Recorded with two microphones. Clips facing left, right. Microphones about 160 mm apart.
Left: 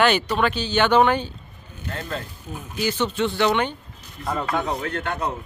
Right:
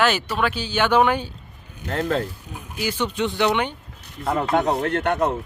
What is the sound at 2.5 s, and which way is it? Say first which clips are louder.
Speech: left 7 dB; 10° right (ahead or behind).